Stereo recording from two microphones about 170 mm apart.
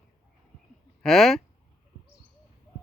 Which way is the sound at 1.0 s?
Centre (ahead or behind).